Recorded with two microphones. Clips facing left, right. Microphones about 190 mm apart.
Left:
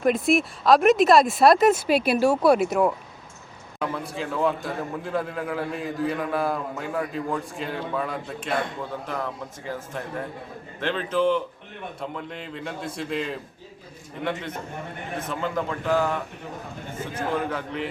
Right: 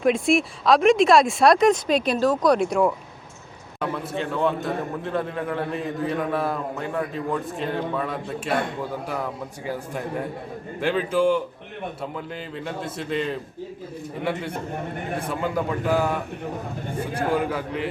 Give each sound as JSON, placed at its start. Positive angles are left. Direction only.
{"t": 0.0, "sound": "a man's voice", "side_deg": 0}
{"t": 9.6, "sound": "a man's voice", "side_deg": -15}
{"t": 15.3, "sound": "a man's voice", "side_deg": -10}
{"t": 16.9, "sound": "a man's voice", "side_deg": -35}
{"t": 17.3, "sound": "a man's voice", "side_deg": -5}